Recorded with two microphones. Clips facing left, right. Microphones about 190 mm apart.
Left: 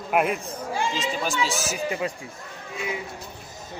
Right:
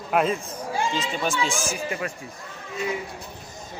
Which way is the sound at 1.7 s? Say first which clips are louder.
Left 2 dB; 20° left (ahead or behind).